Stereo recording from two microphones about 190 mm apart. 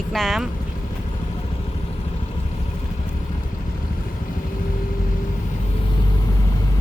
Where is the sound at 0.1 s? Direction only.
Centre (ahead or behind).